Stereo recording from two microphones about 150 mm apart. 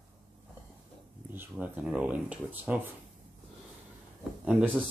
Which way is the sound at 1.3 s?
10° right (ahead or behind).